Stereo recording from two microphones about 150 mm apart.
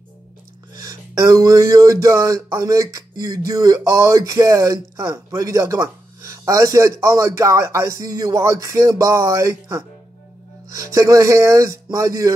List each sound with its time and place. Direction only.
0.8 s speech: 25° right (ahead or behind)